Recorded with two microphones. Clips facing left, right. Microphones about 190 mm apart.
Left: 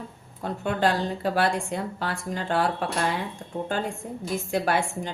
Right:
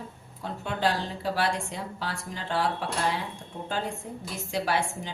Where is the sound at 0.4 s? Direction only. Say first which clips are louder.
Left 4 dB; 50° left (ahead or behind).